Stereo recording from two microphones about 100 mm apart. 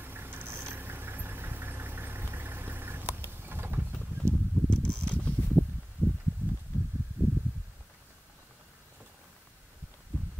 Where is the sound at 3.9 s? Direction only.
10° left (ahead or behind).